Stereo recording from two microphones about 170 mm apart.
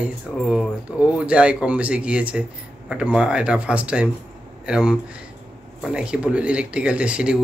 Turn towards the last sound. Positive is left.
turn(degrees=-5)  # may be behind; listen again after turning